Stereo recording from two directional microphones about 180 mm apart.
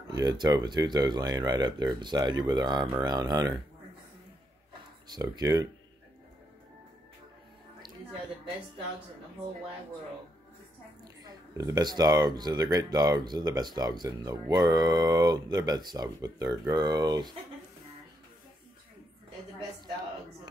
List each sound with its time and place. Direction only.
0.1 s speech: 20° right (ahead or behind)
5.0 s speech: 25° right (ahead or behind)
11.2 s speech: 20° right (ahead or behind)